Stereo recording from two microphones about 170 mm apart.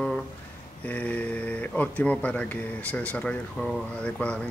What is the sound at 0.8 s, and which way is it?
Speech, 10° left (ahead or behind).